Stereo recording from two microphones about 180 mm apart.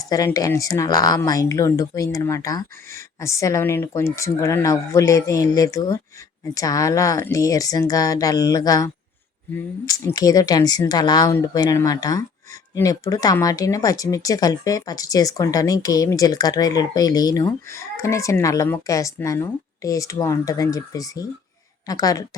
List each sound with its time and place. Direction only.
0.0 s a woman's voice: 20° left (ahead or behind)